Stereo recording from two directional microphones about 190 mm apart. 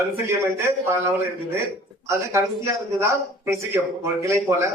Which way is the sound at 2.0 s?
15° right (ahead or behind).